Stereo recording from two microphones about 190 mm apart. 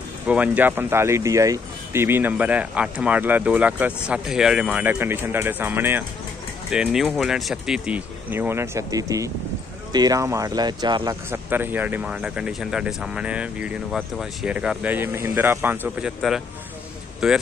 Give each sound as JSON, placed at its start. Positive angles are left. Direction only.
{"t": 0.3, "sound": "speech", "side_deg": -10}
{"t": 11.2, "sound": "speech", "side_deg": -10}